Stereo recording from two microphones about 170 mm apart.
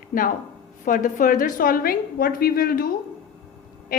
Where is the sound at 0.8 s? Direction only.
50° left (ahead or behind).